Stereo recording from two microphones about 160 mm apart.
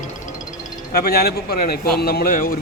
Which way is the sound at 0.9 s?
75° left (ahead or behind).